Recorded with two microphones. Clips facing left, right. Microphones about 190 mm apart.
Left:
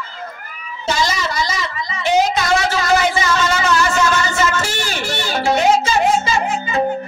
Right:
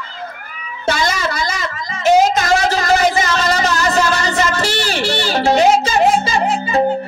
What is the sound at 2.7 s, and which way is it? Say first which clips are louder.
Music: right 2 dB; 40° right (ahead or behind).